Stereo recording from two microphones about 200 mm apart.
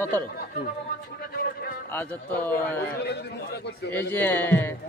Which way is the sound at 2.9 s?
55° left (ahead or behind).